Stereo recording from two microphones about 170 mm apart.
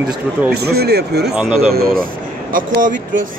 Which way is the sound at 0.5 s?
70° right (ahead or behind).